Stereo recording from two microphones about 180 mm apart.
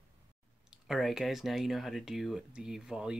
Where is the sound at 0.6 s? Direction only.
Centre (ahead or behind).